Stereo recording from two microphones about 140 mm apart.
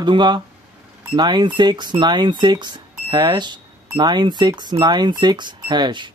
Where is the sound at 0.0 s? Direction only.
35° right (ahead or behind).